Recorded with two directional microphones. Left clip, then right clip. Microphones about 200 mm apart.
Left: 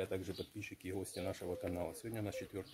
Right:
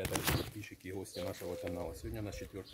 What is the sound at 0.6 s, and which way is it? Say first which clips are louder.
Speech: even; 30° left (ahead or behind).